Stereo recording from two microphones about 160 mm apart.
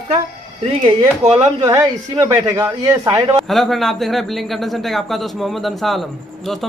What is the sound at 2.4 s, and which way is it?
Speech, 20° right (ahead or behind).